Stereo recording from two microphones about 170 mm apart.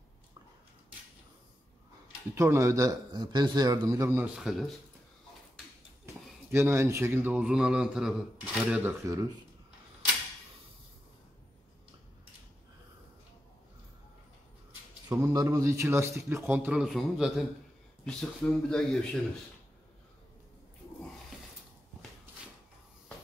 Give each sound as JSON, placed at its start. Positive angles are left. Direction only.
{"t": 2.3, "sound": "a man's voice", "side_deg": -15}
{"t": 4.4, "sound": "speech", "side_deg": 0}
{"t": 6.5, "sound": "a man's voice", "side_deg": -15}
{"t": 15.0, "sound": "a man's voice", "side_deg": -20}